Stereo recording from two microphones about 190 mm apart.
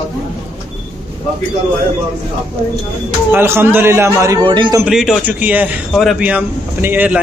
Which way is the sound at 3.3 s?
10° right (ahead or behind).